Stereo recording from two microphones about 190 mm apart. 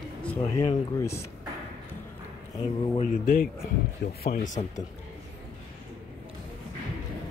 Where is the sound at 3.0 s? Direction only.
45° left (ahead or behind).